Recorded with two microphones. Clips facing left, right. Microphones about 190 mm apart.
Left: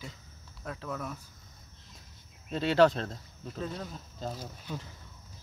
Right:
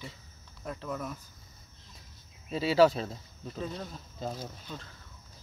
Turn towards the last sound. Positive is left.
turn(degrees=15)  # may be behind; listen again after turning